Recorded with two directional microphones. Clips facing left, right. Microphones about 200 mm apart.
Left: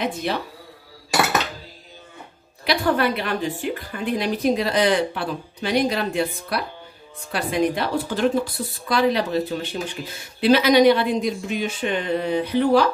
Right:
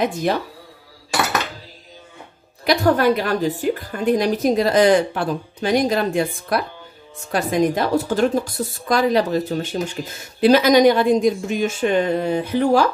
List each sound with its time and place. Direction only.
0.0 s a woman's voice: 45° right (ahead or behind)
2.6 s a woman's voice: 45° right (ahead or behind)